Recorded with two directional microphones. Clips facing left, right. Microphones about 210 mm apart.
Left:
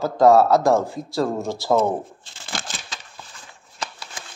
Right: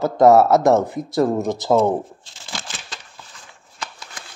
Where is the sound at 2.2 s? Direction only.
55° left (ahead or behind).